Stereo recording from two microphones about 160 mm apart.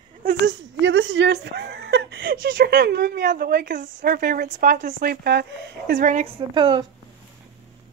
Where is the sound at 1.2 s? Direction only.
90° right; by 4.6 s 55° right (ahead or behind).